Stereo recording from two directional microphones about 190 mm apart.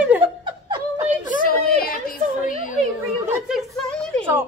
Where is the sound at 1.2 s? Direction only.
45° left (ahead or behind).